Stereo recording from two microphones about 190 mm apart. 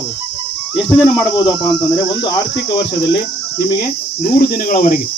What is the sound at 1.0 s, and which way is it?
Speech, 25° left (ahead or behind).